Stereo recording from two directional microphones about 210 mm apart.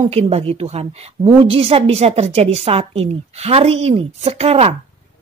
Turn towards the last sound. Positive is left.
turn(degrees=-30)  # may be behind; listen again after turning